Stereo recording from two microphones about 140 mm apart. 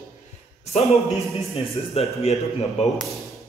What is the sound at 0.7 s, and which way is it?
A man's voice, 50° left (ahead or behind).